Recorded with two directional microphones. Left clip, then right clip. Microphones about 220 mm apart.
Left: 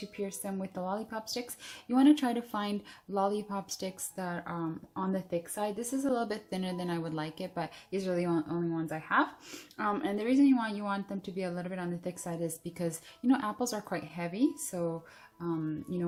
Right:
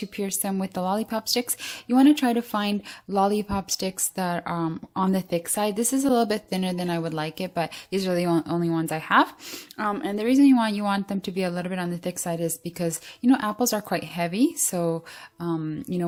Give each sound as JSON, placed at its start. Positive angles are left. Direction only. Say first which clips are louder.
{"t": 0.2, "sound": "a woman's voice", "louder": "right 8 dB", "side_deg": -45}